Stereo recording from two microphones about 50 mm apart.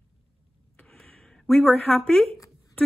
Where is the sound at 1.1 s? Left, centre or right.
Centre.